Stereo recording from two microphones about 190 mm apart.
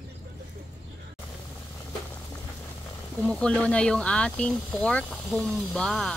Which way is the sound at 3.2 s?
5° left (ahead or behind).